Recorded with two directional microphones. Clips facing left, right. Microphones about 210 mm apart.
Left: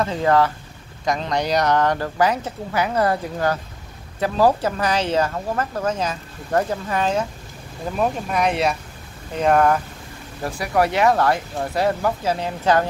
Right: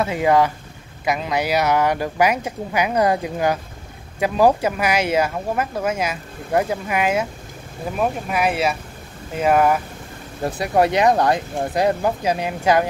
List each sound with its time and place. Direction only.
0.0 s speech: 10° right (ahead or behind)
10.4 s speech: 25° right (ahead or behind)